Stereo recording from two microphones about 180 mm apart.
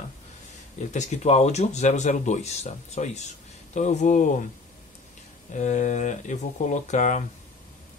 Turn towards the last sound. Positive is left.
turn(degrees=40)  # may be behind; listen again after turning